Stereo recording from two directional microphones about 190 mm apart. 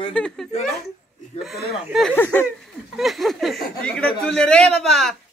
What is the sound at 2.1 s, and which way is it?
Speech, 10° left (ahead or behind).